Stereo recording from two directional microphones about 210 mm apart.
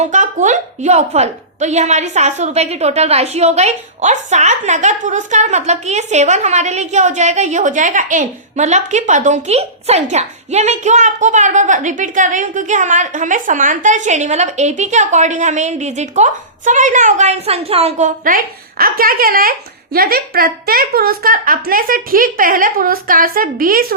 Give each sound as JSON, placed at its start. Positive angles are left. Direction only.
{"t": 0.0, "sound": "a woman's voice", "side_deg": -35}